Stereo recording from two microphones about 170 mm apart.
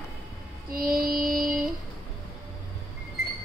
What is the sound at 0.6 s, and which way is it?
Mantra, 60° right (ahead or behind).